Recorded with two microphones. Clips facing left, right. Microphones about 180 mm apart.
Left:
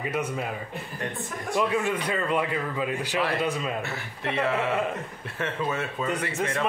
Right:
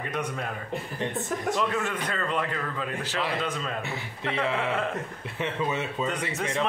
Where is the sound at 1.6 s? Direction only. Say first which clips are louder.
Left 3 dB; 10° left (ahead or behind).